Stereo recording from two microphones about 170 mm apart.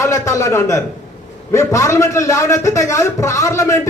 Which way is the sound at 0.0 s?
15° left (ahead or behind).